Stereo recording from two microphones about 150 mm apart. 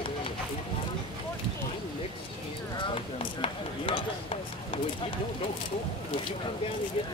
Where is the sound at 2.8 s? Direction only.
35° left (ahead or behind).